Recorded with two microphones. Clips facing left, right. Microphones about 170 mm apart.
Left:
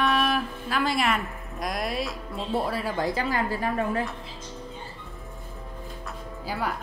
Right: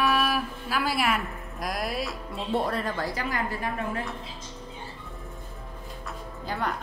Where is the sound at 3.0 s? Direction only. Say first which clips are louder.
Left 4 dB; 25° left (ahead or behind).